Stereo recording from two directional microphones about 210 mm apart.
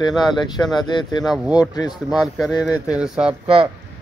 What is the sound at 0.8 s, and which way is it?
Speech, 20° left (ahead or behind).